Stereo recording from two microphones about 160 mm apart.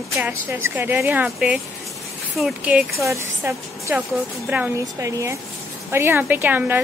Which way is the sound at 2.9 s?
15° right (ahead or behind).